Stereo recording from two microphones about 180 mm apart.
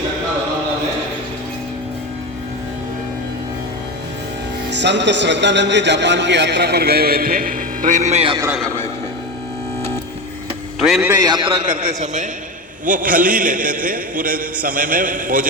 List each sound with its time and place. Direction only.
4.7 s a man's voice: 75° right (ahead or behind); by 8.4 s 35° right (ahead or behind)
10.8 s a man's voice: centre (ahead or behind)
11.3 s a man's voice: 25° right (ahead or behind)
11.7 s a man's voice: 45° right (ahead or behind)